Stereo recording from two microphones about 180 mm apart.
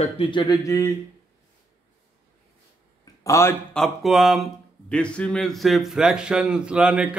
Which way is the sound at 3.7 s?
Centre (ahead or behind).